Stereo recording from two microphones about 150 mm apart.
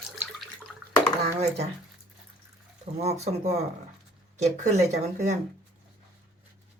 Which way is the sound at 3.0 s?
45° right (ahead or behind).